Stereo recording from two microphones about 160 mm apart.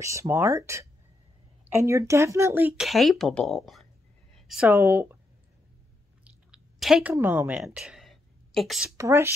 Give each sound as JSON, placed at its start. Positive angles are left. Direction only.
{"t": 0.0, "sound": "speech", "side_deg": -20}
{"t": 2.9, "sound": "speech", "side_deg": 0}
{"t": 4.3, "sound": "a sound", "side_deg": -5}
{"t": 4.7, "sound": "speech", "side_deg": -15}
{"t": 6.2, "sound": "chewing", "side_deg": -5}
{"t": 7.6, "sound": "a sound", "side_deg": -5}
{"t": 8.9, "sound": "speech", "side_deg": -15}